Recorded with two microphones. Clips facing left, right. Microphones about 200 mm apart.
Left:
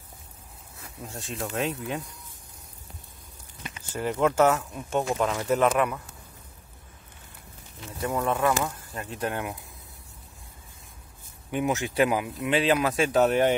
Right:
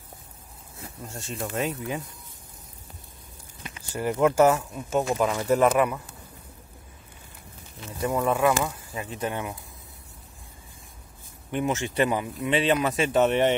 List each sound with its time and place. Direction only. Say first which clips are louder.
1.0 s speech: even; centre (ahead or behind)
3.9 s speech: right 2 dB; 10° right (ahead or behind)
8.0 s speech: right 2 dB; centre (ahead or behind)
11.5 s speech: even; 5° left (ahead or behind)